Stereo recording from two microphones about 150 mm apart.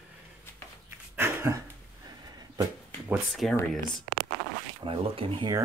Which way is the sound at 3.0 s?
Centre (ahead or behind).